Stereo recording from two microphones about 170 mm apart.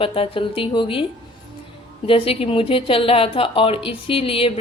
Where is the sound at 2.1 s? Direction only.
35° left (ahead or behind).